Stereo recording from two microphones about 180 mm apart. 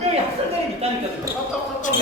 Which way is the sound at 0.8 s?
35° right (ahead or behind).